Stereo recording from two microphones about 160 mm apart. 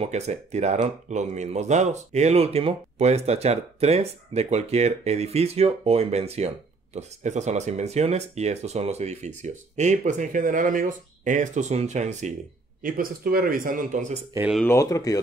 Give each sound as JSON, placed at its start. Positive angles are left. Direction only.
{"t": 0.0, "sound": "speech", "side_deg": -45}
{"t": 12.8, "sound": "speech", "side_deg": -65}
{"t": 14.6, "sound": "speech", "side_deg": 15}